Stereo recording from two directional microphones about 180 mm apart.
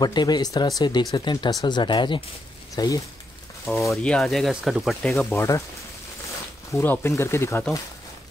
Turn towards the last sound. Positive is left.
turn(degrees=15)  # may be behind; listen again after turning